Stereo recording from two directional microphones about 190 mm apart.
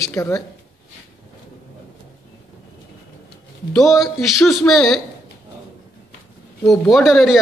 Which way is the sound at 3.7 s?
Centre (ahead or behind).